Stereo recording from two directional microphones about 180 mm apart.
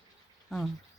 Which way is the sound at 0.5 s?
Centre (ahead or behind).